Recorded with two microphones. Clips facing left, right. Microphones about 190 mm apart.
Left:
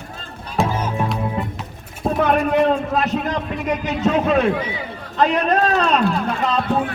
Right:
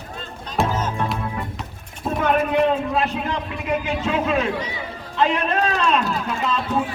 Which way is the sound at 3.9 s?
40° left (ahead or behind).